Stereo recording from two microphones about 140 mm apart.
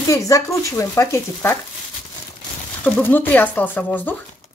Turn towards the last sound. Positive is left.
turn(degrees=10)  # may be behind; listen again after turning